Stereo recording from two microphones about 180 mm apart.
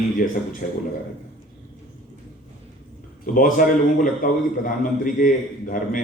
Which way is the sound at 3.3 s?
50° left (ahead or behind).